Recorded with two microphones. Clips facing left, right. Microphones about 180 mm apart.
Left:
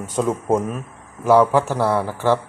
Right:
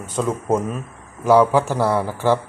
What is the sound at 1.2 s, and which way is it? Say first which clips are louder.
Speech: even; centre (ahead or behind).